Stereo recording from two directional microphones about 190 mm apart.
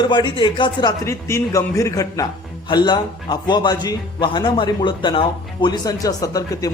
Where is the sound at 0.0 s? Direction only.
25° left (ahead or behind).